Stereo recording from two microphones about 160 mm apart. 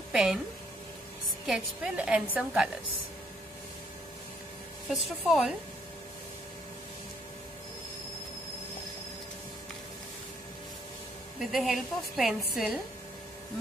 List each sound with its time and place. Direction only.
0.1 s a woman's voice: centre (ahead or behind)
1.4 s a woman's voice: 5° right (ahead or behind)
5.0 s a woman's voice: centre (ahead or behind)
11.3 s a woman's voice: centre (ahead or behind)